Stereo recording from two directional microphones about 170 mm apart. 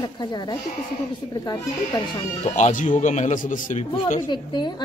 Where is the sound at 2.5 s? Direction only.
45° left (ahead or behind).